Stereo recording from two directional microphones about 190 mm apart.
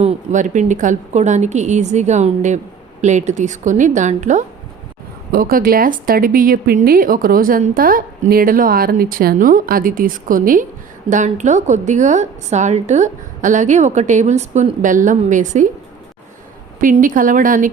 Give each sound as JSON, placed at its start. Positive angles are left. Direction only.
{"t": 0.0, "sound": "a woman's voice", "side_deg": -35}
{"t": 5.3, "sound": "a woman's voice", "side_deg": -50}
{"t": 16.8, "sound": "speech", "side_deg": -45}